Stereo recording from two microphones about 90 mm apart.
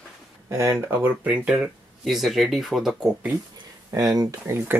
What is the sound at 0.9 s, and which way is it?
Speech, 15° right (ahead or behind).